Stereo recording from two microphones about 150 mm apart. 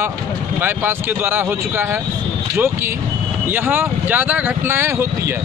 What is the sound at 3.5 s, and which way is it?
Speech, 15° right (ahead or behind).